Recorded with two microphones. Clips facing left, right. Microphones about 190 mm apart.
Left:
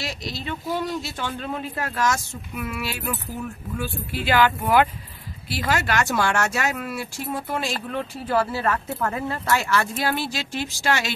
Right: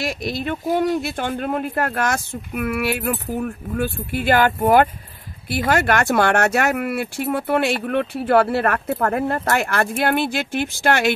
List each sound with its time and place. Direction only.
0.0 s speech: 55° right (ahead or behind)